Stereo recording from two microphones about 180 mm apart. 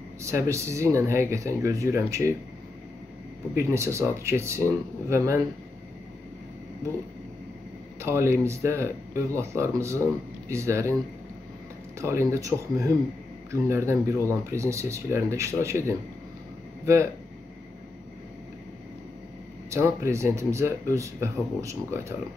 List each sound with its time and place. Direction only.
0.2 s speech: 15° right (ahead or behind)
3.5 s speech: 15° right (ahead or behind)
8.0 s speech: 15° right (ahead or behind)
12.0 s speech: 15° right (ahead or behind)
19.7 s speech: 15° right (ahead or behind)